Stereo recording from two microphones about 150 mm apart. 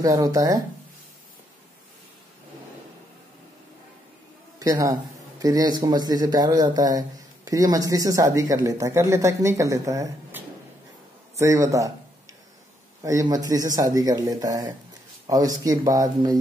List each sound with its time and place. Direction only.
0.0 s speech: 25° right (ahead or behind)
4.6 s speech: 20° right (ahead or behind)
11.3 s a sound: 20° right (ahead or behind)
13.0 s speech: 25° right (ahead or behind)